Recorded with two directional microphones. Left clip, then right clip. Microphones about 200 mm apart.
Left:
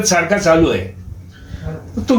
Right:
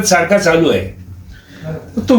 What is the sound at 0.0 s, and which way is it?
Speech, 15° left (ahead or behind).